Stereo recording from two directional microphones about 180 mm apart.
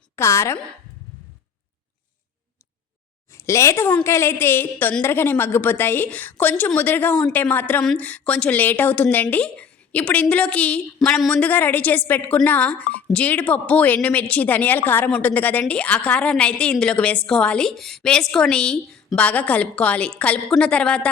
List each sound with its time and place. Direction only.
0.2 s a woman's voice: 15° left (ahead or behind)
3.3 s a woman's voice: 15° left (ahead or behind)